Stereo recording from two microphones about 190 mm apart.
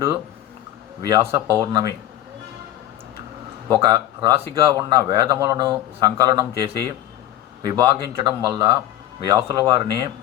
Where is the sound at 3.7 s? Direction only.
25° right (ahead or behind).